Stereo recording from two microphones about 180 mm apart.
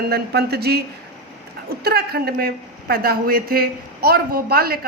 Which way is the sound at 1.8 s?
60° right (ahead or behind).